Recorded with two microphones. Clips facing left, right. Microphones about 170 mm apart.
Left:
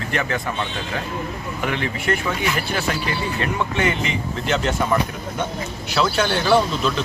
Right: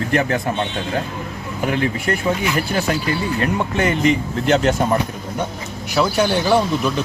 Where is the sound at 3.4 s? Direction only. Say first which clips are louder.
Even; 40° right (ahead or behind).